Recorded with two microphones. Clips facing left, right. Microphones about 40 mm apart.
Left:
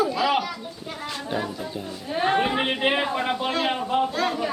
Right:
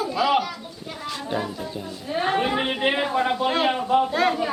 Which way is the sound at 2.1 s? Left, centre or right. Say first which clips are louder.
Even; centre.